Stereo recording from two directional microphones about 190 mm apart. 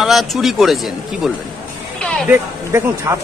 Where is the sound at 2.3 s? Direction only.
15° right (ahead or behind).